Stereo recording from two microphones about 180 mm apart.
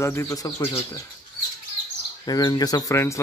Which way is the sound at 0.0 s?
15° left (ahead or behind).